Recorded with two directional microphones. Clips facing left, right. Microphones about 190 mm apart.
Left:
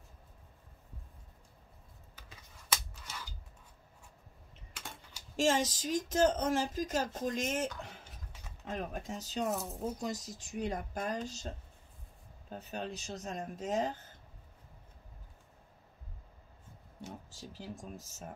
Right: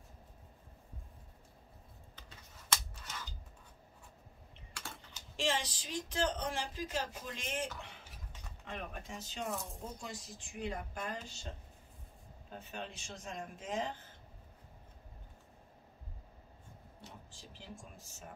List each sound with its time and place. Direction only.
2.7 s a sound: 10° left (ahead or behind)
4.7 s typing: 20° left (ahead or behind)
5.3 s speech: 45° left (ahead or behind)
8.6 s speech: 40° left (ahead or behind)
9.5 s speech: centre (ahead or behind)
9.9 s speech: 40° left (ahead or behind)
12.4 s speech: 40° left (ahead or behind)
17.3 s speech: 40° left (ahead or behind)